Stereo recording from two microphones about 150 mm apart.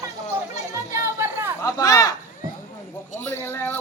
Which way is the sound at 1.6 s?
25° left (ahead or behind).